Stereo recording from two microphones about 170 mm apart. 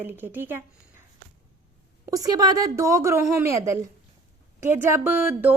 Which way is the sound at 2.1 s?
20° right (ahead or behind).